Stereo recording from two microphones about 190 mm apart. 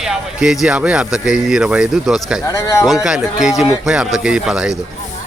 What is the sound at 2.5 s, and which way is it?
Speech, 15° left (ahead or behind).